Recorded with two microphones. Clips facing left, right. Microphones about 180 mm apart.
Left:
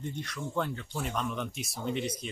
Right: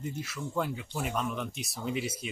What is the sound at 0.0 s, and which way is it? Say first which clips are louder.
Speech: even; 5° right (ahead or behind).